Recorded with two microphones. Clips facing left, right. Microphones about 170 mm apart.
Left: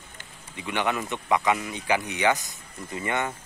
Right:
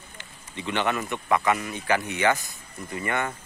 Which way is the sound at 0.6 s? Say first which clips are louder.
Right 1 dB; 10° left (ahead or behind).